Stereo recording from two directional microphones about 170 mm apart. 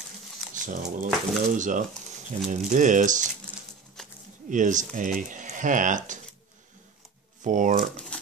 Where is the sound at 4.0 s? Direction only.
5° left (ahead or behind).